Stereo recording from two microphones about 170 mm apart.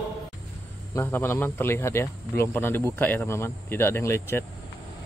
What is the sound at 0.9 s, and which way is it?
Speech, 10° left (ahead or behind).